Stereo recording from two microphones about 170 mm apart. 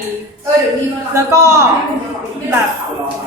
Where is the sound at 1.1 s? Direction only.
15° right (ahead or behind).